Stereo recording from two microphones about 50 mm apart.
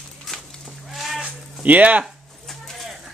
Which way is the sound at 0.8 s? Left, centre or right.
Centre.